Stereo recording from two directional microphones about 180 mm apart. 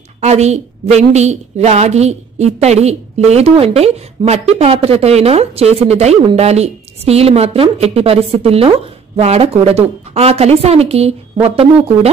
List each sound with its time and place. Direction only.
0.2 s a woman's voice: 40° right (ahead or behind)